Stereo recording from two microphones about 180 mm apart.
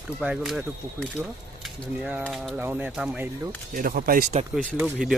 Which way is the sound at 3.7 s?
50° right (ahead or behind).